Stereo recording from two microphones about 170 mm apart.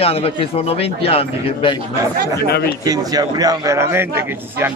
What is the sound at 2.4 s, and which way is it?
Speech, 70° left (ahead or behind).